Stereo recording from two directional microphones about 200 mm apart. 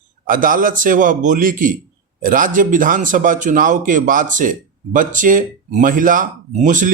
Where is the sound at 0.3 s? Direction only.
45° right (ahead or behind).